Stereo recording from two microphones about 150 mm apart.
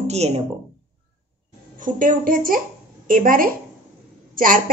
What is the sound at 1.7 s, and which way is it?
A woman's voice, 65° right (ahead or behind).